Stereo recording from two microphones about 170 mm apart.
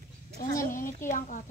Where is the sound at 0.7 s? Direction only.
50° left (ahead or behind).